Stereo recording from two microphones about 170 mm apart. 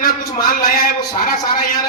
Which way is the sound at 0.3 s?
60° left (ahead or behind).